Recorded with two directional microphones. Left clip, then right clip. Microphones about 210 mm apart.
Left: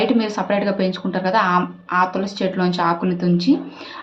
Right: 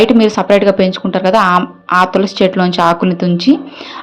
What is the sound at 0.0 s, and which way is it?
A woman's voice, 35° right (ahead or behind).